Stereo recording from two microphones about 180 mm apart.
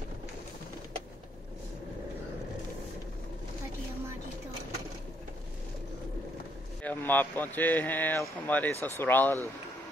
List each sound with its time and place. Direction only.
6.8 s speech: 10° left (ahead or behind)